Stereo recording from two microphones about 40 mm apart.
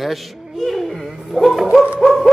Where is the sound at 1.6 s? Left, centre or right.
Centre.